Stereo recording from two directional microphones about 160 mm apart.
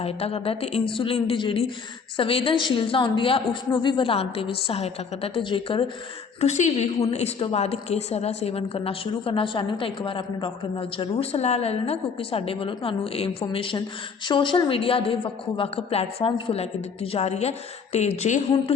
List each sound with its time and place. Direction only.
0.0 s a woman's voice: 40° left (ahead or behind)
6.4 s a woman's voice: 45° left (ahead or behind)